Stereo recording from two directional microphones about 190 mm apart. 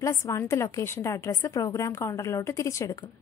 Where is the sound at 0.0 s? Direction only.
15° left (ahead or behind).